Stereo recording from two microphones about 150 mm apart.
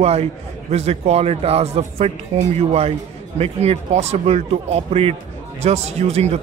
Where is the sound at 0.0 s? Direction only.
45° right (ahead or behind).